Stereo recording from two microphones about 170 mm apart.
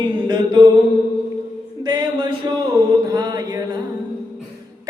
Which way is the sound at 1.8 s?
25° right (ahead or behind).